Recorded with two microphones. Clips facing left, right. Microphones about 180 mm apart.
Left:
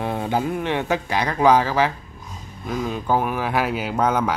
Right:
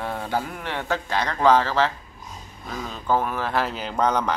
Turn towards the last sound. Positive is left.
turn(degrees=5)  # may be behind; listen again after turning